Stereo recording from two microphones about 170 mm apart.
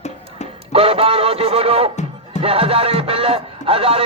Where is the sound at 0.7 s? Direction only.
35° right (ahead or behind).